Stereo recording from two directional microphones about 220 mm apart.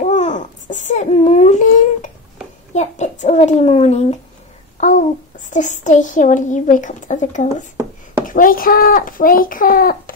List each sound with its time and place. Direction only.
0.0 s babbling: 35° left (ahead or behind)
2.7 s a child's voice: 30° left (ahead or behind)